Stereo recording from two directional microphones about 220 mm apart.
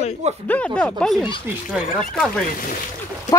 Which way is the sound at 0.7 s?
5° left (ahead or behind).